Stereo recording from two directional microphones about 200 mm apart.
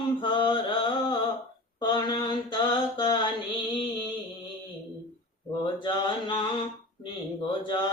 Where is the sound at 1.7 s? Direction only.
20° left (ahead or behind).